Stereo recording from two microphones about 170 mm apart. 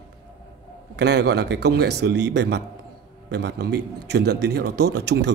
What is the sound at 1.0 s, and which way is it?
A man's voice, 85° right.